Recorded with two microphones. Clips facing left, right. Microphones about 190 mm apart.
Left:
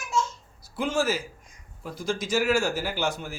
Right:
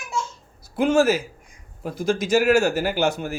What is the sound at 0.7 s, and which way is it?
Speech, 65° right (ahead or behind).